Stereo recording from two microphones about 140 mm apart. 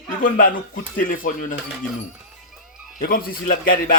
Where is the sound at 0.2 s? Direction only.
80° left.